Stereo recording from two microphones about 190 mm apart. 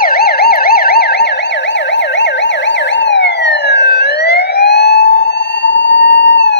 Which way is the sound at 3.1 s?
65° left (ahead or behind).